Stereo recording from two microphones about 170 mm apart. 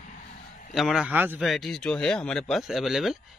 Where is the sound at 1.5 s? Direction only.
Centre (ahead or behind).